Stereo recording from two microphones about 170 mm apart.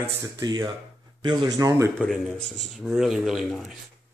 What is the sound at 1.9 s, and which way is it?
Speech, centre (ahead or behind).